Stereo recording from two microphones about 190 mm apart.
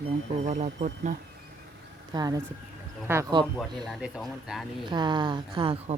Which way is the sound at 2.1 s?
20° right (ahead or behind).